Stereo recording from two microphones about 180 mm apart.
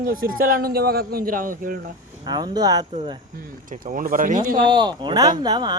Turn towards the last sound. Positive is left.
turn(degrees=-25)  # may be behind; listen again after turning